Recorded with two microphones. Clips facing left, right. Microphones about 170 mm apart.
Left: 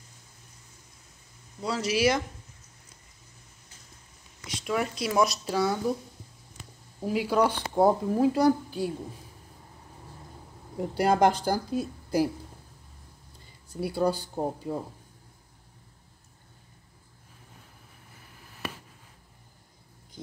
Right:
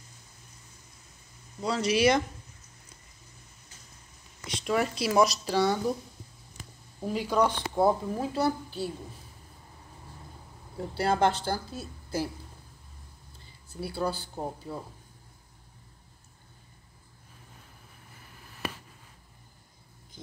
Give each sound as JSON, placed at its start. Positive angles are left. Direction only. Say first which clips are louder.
{"t": 1.6, "sound": "speech", "louder": "right 1 dB", "side_deg": 5}
{"t": 4.5, "sound": "speech", "louder": "right 1 dB", "side_deg": 0}
{"t": 7.0, "sound": "a woman's voice", "louder": "left 2 dB", "side_deg": 5}
{"t": 10.8, "sound": "speech", "louder": "left 3 dB", "side_deg": 10}
{"t": 13.7, "sound": "speech", "louder": "left 5 dB", "side_deg": 15}